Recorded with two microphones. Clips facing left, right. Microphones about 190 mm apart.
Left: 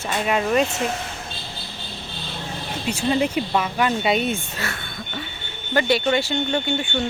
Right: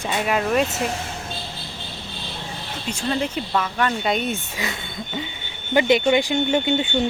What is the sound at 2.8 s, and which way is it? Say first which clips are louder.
Speech: left 3 dB; 10° left (ahead or behind).